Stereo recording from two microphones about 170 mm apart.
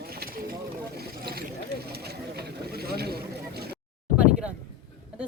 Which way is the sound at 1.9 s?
70° right (ahead or behind).